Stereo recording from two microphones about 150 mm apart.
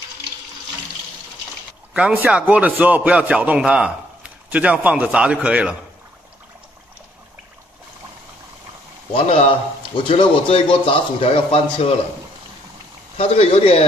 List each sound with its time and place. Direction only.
2.0 s a man's voice: 5° right (ahead or behind)
9.1 s a man's voice: 40° left (ahead or behind)
13.2 s a man's voice: 40° left (ahead or behind)